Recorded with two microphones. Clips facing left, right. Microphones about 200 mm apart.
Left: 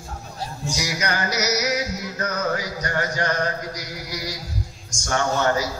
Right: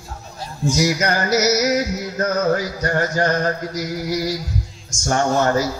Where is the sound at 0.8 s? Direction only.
45° right (ahead or behind).